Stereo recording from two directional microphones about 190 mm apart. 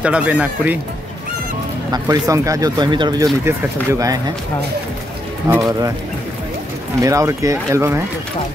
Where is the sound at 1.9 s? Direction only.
20° right (ahead or behind).